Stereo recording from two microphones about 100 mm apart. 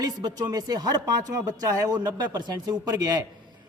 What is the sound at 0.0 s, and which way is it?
A man's voice, 40° right (ahead or behind).